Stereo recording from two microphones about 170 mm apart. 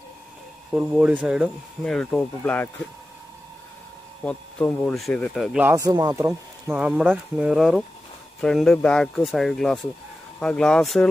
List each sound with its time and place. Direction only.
0.7 s speech: 5° right (ahead or behind); by 2.7 s 10° left (ahead or behind)
4.2 s speech: 10° left (ahead or behind)
5.6 s speech: 10° right (ahead or behind)
5.9 s speech: 20° right (ahead or behind)
6.7 s speech: 5° right (ahead or behind)